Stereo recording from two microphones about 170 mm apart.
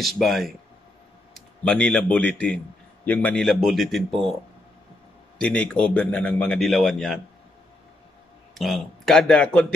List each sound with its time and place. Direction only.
0.0 s a man's voice: centre (ahead or behind)
5.4 s a man's voice: 5° left (ahead or behind)
8.5 s a man's voice: centre (ahead or behind)